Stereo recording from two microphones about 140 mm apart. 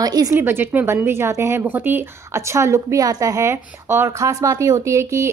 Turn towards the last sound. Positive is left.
turn(degrees=-20)  # may be behind; listen again after turning